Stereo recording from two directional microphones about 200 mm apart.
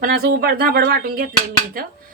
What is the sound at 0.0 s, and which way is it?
A woman's voice, 50° right (ahead or behind).